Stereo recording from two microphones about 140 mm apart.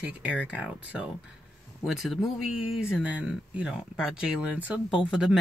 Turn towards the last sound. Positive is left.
turn(degrees=-5)  # may be behind; listen again after turning